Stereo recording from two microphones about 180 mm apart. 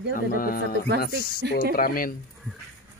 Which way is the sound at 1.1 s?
65° right (ahead or behind).